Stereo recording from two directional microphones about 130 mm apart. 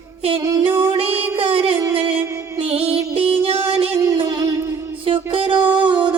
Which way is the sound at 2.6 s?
50° right (ahead or behind).